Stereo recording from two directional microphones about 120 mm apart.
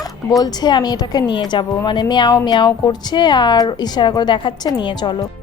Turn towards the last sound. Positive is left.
turn(degrees=40)  # may be behind; listen again after turning